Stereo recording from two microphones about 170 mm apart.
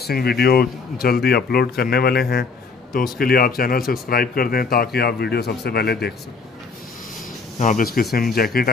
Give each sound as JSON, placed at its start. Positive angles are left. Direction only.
{"t": 0.0, "sound": "speech", "side_deg": 65}
{"t": 7.5, "sound": "speech", "side_deg": 50}